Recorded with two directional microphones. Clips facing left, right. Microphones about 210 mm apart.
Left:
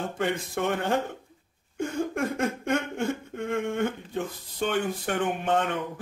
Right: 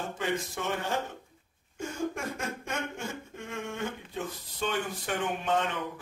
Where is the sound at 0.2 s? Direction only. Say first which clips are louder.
Left 5 dB; 60° left (ahead or behind).